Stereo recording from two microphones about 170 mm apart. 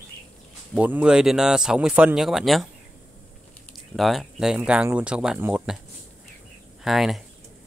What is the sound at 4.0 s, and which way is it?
Speech, centre (ahead or behind).